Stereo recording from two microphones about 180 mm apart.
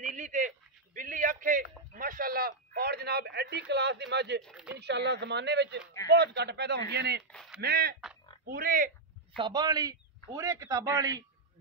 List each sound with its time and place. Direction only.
0.0 s speech: 45° right (ahead or behind); by 4.4 s 70° right (ahead or behind)
4.4 s speech: 5° left (ahead or behind)
4.7 s a man's voice: 70° right (ahead or behind)
7.2 s a sound: centre (ahead or behind)
7.6 s speech: 60° right (ahead or behind)
9.4 s a man's voice: 25° right (ahead or behind)